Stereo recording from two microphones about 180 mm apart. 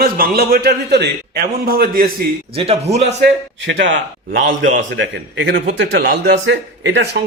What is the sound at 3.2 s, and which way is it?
A man's voice, 80° right.